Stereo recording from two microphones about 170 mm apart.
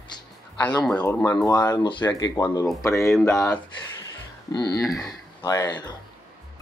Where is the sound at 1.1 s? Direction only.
15° left (ahead or behind).